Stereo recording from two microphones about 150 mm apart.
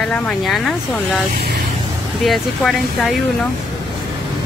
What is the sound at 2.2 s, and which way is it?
Speech, centre (ahead or behind).